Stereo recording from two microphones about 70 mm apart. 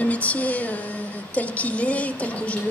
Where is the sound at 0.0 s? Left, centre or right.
Left.